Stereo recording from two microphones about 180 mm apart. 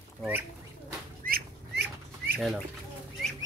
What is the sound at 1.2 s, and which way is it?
Bird, 65° right (ahead or behind).